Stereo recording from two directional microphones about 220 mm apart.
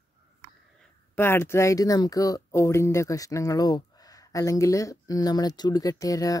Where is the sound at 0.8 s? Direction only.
10° left (ahead or behind).